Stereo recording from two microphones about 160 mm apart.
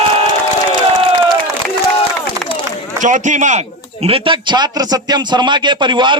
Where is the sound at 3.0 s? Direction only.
50° right (ahead or behind).